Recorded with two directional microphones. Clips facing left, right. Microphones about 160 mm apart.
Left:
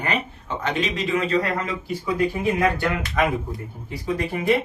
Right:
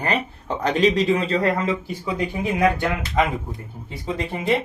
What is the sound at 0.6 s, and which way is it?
Speech, 35° right (ahead or behind).